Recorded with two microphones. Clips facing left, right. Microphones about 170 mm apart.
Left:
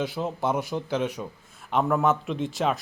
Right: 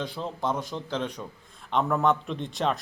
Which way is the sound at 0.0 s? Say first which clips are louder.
Left 3 dB; 10° left (ahead or behind).